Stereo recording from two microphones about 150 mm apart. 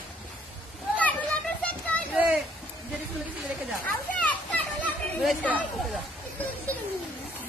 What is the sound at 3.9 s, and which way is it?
Children playing, 10° left (ahead or behind).